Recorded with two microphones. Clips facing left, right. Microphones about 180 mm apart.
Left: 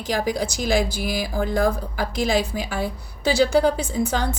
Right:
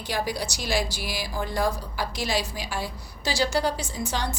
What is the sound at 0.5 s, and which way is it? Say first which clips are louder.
Speech: left 6 dB; 50° left (ahead or behind).